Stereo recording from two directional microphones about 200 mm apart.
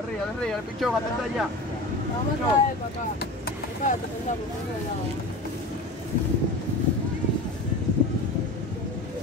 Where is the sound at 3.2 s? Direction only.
45° left (ahead or behind).